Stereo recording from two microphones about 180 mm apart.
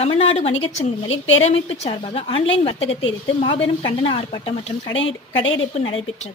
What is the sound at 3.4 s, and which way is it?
A woman's voice, 30° left (ahead or behind).